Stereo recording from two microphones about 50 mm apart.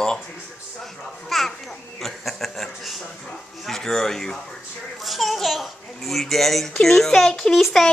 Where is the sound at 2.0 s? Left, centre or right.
Centre.